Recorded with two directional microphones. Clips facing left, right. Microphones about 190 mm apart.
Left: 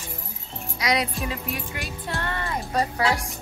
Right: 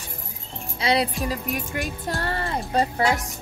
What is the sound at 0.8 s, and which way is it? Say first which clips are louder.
Speech: right 3 dB; 30° right (ahead or behind).